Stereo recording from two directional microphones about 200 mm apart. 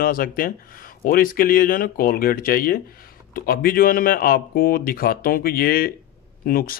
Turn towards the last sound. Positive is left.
turn(degrees=45)  # may be behind; listen again after turning